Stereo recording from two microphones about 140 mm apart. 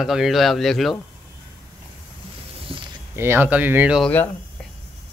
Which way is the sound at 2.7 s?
40° right (ahead or behind).